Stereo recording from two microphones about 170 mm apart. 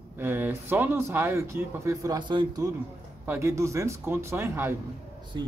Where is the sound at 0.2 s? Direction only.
15° right (ahead or behind).